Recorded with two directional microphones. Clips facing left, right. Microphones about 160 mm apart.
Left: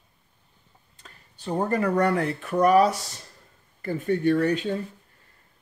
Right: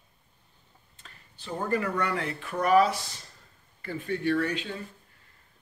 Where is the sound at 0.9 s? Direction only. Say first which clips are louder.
Left 3 dB; 40° left (ahead or behind).